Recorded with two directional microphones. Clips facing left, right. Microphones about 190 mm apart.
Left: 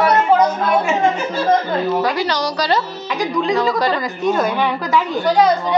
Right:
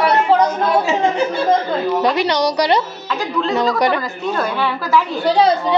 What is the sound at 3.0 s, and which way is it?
A woman's voice, 15° left (ahead or behind).